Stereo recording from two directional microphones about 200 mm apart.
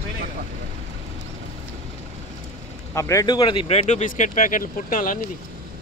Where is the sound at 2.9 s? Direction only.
15° left (ahead or behind); by 5.1 s 45° left (ahead or behind).